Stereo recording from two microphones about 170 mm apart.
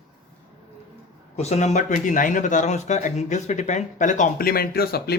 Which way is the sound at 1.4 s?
40° left (ahead or behind).